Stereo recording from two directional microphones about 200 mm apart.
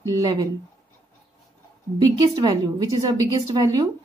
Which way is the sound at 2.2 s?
20° right (ahead or behind).